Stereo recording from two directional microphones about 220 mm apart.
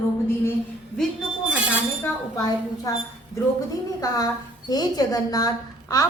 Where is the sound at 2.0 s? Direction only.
15° left (ahead or behind).